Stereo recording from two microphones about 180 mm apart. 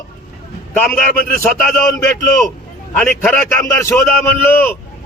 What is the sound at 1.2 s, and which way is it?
A man's voice, 10° left (ahead or behind).